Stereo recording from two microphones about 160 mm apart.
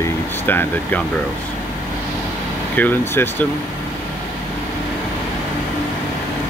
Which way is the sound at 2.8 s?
10° left (ahead or behind).